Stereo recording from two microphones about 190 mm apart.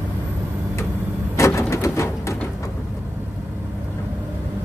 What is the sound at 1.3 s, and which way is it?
Bird, 15° left (ahead or behind).